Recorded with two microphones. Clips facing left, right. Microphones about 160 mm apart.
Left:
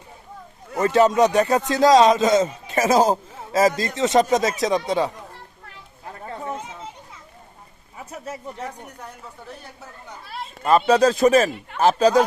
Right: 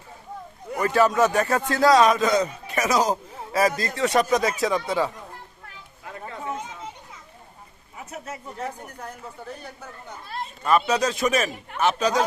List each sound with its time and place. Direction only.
0.8 s speech: 25° left (ahead or behind)
7.9 s a sound: 30° left (ahead or behind)
8.6 s speech: centre (ahead or behind)
10.7 s speech: 30° left (ahead or behind)